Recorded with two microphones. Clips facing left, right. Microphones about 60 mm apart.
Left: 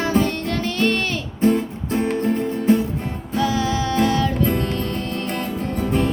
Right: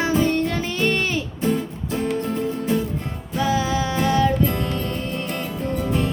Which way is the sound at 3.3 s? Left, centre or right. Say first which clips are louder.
Even; centre.